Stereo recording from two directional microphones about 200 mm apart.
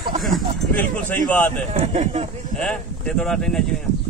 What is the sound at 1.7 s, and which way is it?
Speech, 30° right (ahead or behind).